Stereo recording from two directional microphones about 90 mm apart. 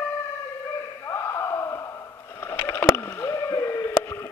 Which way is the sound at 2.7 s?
30° left (ahead or behind).